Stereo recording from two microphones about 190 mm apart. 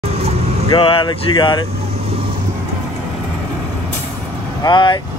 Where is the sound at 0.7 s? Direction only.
25° left (ahead or behind).